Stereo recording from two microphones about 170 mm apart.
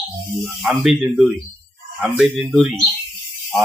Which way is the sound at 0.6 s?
5° right (ahead or behind).